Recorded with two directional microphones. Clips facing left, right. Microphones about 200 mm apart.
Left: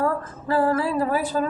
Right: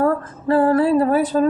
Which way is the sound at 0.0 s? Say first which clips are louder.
Right 6 dB; 35° right (ahead or behind).